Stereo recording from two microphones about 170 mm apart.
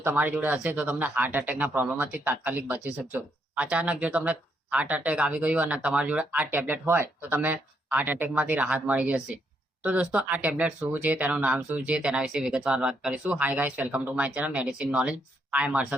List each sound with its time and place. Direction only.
0.0 s speech: 10° right (ahead or behind)